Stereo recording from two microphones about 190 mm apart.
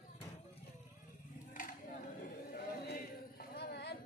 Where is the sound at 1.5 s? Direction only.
45° left (ahead or behind).